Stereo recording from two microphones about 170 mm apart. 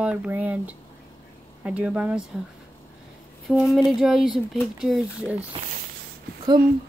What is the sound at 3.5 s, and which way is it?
Speech, centre (ahead or behind).